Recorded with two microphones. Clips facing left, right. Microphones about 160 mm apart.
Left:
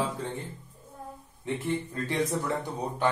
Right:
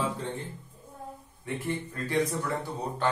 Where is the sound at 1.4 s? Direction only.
25° left (ahead or behind).